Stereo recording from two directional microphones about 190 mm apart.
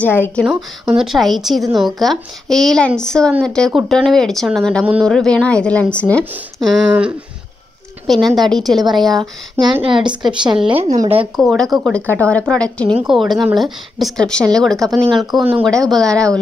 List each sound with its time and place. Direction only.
0.0 s a woman's voice: 10° left (ahead or behind)
0.4 s speech: centre (ahead or behind)
9.6 s a woman's voice: 25° right (ahead or behind)
10.5 s speech: 5° right (ahead or behind)